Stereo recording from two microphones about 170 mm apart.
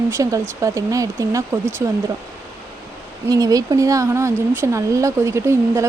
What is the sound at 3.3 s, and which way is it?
Speech, 20° right (ahead or behind).